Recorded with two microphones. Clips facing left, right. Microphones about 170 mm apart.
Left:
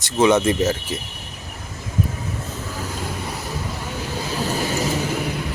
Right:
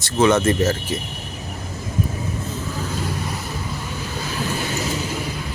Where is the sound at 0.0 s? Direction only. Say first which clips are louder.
Even; 15° left (ahead or behind).